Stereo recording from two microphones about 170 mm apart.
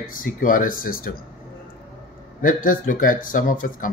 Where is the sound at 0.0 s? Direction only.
55° left (ahead or behind).